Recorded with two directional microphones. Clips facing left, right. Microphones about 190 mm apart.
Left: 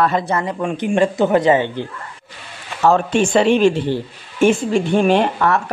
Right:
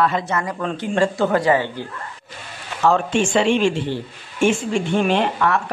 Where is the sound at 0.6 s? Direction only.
15° left (ahead or behind).